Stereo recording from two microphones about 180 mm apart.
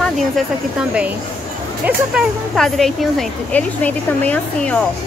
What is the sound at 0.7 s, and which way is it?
Speech, 5° right (ahead or behind).